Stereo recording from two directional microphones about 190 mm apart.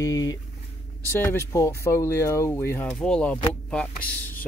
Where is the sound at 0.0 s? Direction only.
20° left (ahead or behind).